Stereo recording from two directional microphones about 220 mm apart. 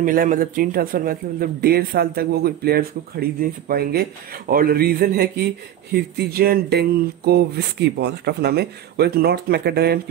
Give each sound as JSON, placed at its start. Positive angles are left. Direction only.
{"t": 0.0, "sound": "speech", "side_deg": -40}